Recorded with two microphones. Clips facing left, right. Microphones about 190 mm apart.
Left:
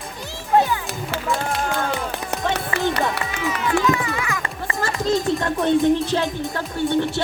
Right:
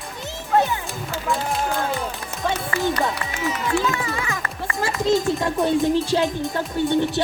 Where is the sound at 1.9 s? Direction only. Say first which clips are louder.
Left 2 dB; 70° left (ahead or behind).